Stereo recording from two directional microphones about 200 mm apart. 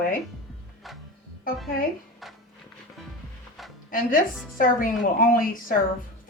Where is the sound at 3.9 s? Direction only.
45° left (ahead or behind).